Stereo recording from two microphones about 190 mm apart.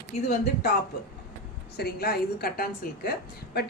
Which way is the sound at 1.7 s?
55° left (ahead or behind).